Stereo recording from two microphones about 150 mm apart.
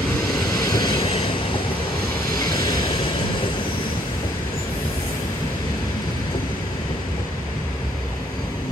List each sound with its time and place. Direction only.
0.7 s vehicle: 30° left (ahead or behind)